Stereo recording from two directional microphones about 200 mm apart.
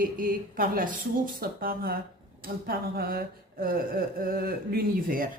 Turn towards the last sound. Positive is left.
turn(degrees=-45)  # may be behind; listen again after turning